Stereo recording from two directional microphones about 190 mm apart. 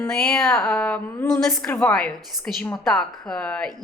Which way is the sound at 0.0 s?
5° left (ahead or behind).